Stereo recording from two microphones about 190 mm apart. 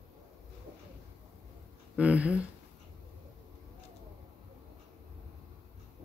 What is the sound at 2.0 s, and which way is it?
Speech, 5° right (ahead or behind).